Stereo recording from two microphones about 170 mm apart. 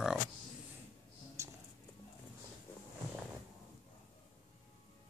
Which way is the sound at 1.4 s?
15° right (ahead or behind).